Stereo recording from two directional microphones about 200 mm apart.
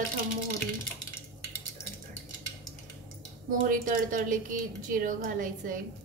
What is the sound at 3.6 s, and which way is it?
A woman's voice, 40° right (ahead or behind).